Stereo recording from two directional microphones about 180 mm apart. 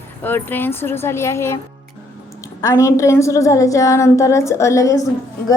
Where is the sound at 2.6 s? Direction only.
15° left (ahead or behind).